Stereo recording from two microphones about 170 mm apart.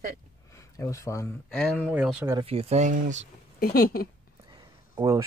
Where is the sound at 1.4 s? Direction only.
5° left (ahead or behind).